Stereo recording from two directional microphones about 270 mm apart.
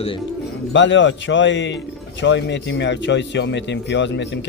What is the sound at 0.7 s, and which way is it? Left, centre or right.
Speech, left.